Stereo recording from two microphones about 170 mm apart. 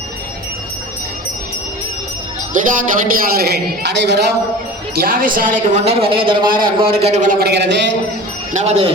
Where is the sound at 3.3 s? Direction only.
70° right (ahead or behind); by 4.3 s 90° right.